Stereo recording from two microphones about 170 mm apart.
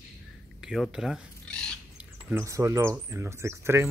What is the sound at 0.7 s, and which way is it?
Speech, 5° right (ahead or behind).